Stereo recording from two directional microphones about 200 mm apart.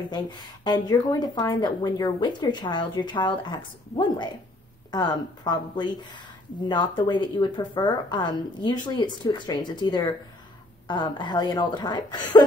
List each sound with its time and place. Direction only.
0.1 s a woman's voice: 20° left (ahead or behind)